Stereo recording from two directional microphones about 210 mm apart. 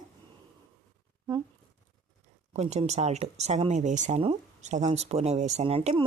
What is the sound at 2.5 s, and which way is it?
Speech, 30° right (ahead or behind).